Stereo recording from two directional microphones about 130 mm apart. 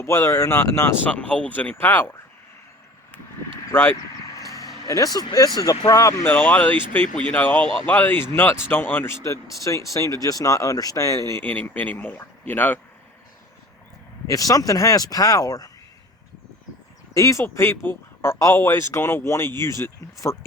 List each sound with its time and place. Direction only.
0.0 s speech: 20° left (ahead or behind)
3.7 s speech: 15° left (ahead or behind)
4.4 s a sound: 25° left (ahead or behind)
4.9 s speech: 30° left (ahead or behind)
14.3 s speech: 25° left (ahead or behind)
17.2 s speech: 25° left (ahead or behind)